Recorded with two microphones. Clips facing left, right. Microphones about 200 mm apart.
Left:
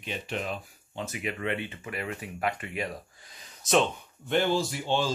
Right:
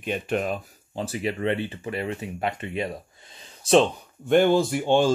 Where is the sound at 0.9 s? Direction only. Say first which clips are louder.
Right 6 dB; 30° right (ahead or behind).